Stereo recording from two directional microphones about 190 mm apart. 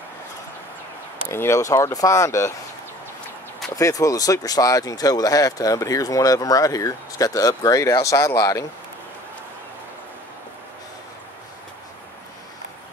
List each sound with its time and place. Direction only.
1.2 s speech: 15° left (ahead or behind)
3.7 s speech: 15° left (ahead or behind)